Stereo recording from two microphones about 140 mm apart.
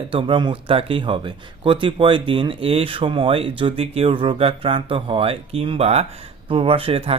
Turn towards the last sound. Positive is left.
turn(degrees=-40)  # may be behind; listen again after turning